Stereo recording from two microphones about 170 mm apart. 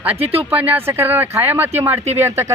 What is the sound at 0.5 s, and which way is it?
Speech, 10° right (ahead or behind).